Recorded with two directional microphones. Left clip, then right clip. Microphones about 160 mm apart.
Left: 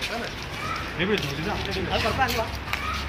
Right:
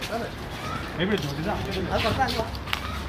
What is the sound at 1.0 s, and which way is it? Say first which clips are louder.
Speech: left 1 dB; 70° right (ahead or behind).